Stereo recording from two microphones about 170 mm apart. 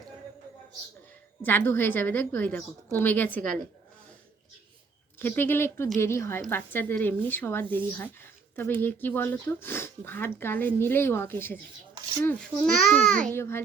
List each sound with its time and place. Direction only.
1.4 s speech: 10° left (ahead or behind)
5.2 s a child's voice: 10° left (ahead or behind)